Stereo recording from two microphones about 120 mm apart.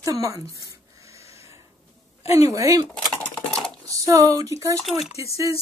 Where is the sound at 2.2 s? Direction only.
60° left (ahead or behind).